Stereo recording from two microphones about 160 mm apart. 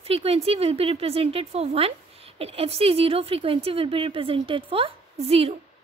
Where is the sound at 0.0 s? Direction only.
40° right (ahead or behind).